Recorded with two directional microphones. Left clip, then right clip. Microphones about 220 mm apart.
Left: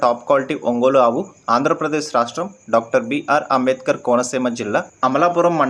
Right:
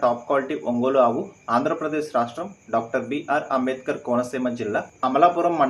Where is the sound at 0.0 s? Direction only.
50° left (ahead or behind).